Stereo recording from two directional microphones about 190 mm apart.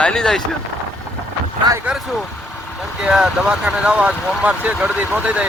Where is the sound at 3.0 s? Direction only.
5° right (ahead or behind).